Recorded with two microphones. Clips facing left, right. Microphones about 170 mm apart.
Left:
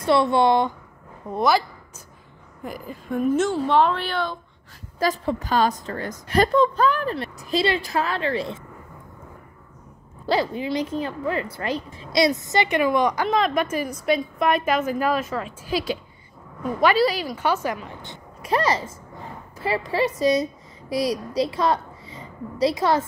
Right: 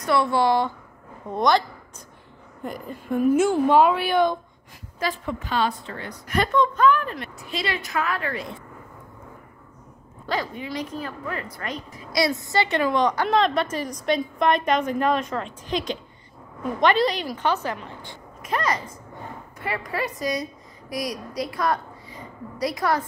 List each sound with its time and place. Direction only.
0.0 s speech: 25° left (ahead or behind)
1.3 s a woman's voice: 5° left (ahead or behind)
2.6 s a woman's voice: centre (ahead or behind)
4.9 s a woman's voice: 35° left (ahead or behind)
10.2 s a woman's voice: 30° left (ahead or behind); by 17.6 s 5° left (ahead or behind)
18.4 s a child's voice: 30° left (ahead or behind)